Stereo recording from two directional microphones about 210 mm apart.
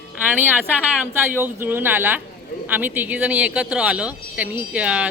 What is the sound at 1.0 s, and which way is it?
Speech, 10° right (ahead or behind).